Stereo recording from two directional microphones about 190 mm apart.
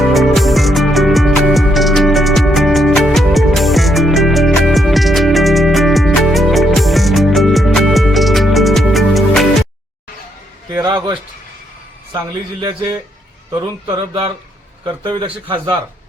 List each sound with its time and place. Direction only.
0.0 s music: centre (ahead or behind)
10.8 s a sound: 20° right (ahead or behind)
13.8 s a man's voice: 25° right (ahead or behind)